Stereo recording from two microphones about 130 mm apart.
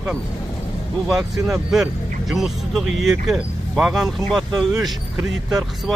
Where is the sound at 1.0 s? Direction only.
5° right (ahead or behind).